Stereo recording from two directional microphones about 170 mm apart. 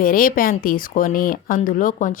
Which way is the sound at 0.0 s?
55° left (ahead or behind).